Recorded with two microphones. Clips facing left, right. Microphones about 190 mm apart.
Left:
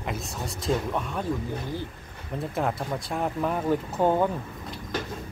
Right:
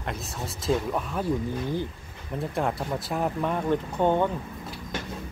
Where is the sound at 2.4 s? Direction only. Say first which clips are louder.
Even; centre (ahead or behind).